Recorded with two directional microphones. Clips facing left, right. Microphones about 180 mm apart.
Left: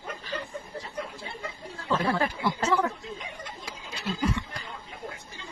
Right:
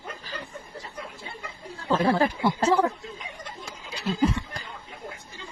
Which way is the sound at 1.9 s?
30° right (ahead or behind).